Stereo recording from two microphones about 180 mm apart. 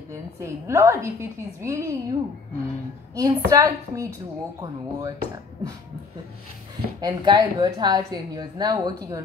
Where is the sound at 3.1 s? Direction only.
20° right (ahead or behind).